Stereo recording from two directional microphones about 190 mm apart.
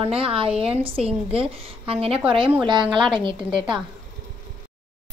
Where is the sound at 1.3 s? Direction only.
30° right (ahead or behind).